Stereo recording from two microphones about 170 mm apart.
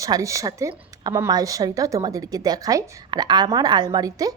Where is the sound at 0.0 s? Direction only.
20° right (ahead or behind).